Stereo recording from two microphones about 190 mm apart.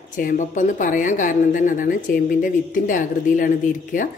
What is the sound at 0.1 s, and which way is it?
A woman's voice, 45° left (ahead or behind).